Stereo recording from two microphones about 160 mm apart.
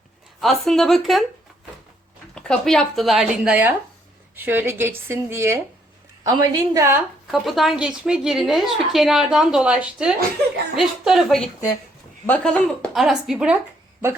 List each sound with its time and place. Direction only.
0.3 s a woman's voice: centre (ahead or behind)
2.3 s a woman's voice: 5° left (ahead or behind); by 7.0 s 20° right (ahead or behind)
7.3 s a woman's voice: centre (ahead or behind)